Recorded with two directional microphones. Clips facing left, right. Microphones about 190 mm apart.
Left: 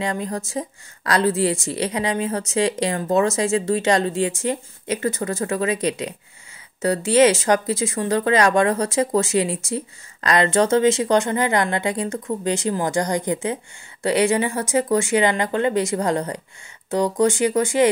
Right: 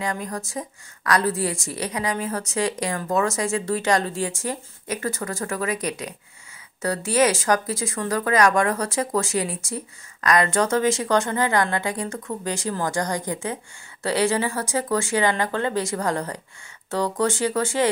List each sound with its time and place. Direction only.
0.0 s speech: 25° left (ahead or behind)